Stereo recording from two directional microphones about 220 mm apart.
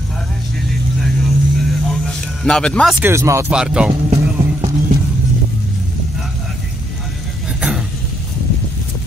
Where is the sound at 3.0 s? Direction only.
15° right (ahead or behind).